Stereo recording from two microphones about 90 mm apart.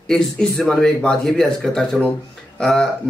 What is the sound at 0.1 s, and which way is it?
Speech, 5° left (ahead or behind).